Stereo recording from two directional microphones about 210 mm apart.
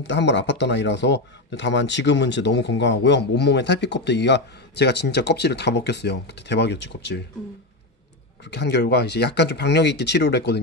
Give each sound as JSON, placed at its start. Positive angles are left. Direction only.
{"t": 0.0, "sound": "speech", "side_deg": 55}
{"t": 8.5, "sound": "speech", "side_deg": 55}